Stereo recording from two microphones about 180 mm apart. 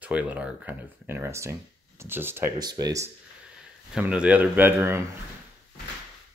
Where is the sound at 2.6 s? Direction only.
25° right (ahead or behind).